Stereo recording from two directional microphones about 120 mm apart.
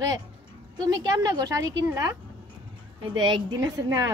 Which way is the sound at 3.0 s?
40° right (ahead or behind).